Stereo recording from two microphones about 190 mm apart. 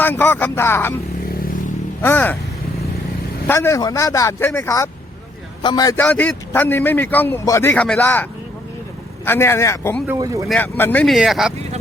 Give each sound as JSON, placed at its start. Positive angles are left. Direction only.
{"t": 0.0, "sound": "a man's voice", "side_deg": 10}
{"t": 1.3, "sound": "vehicle", "side_deg": 45}
{"t": 2.0, "sound": "a man's voice", "side_deg": 10}
{"t": 3.4, "sound": "a man's voice", "side_deg": 10}
{"t": 6.0, "sound": "a man's voice", "side_deg": 10}
{"t": 10.1, "sound": "speech", "side_deg": -15}
{"t": 10.5, "sound": "speech", "side_deg": 10}